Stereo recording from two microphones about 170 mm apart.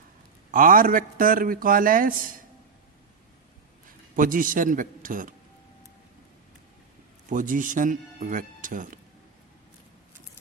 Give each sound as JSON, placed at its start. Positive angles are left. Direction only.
{"t": 0.5, "sound": "a man's voice", "side_deg": -55}
{"t": 3.8, "sound": "a man's voice", "side_deg": -55}
{"t": 7.3, "sound": "speech", "side_deg": -50}